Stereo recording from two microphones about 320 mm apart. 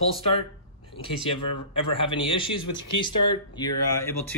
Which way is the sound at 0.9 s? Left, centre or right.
Centre.